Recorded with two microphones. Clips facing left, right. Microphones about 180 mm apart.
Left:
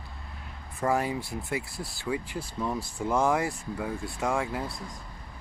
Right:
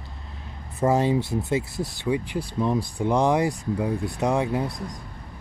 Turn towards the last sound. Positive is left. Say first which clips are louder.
# right 6 dB
turn(degrees=-20)  # may be behind; listen again after turning